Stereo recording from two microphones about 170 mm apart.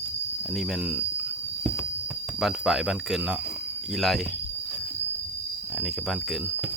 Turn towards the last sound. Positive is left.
turn(degrees=0)  # may be behind; listen again after turning